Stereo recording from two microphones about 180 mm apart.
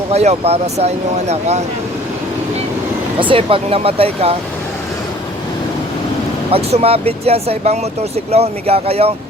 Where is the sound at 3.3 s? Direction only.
30° right (ahead or behind).